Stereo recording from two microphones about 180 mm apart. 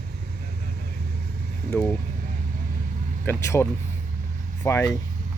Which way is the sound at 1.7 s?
10° left (ahead or behind).